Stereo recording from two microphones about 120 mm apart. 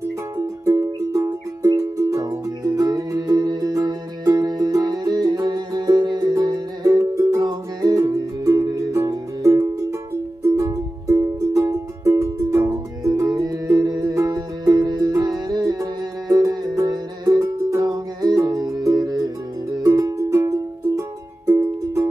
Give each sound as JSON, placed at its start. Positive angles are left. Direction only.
{"t": 0.4, "sound": "music", "side_deg": -25}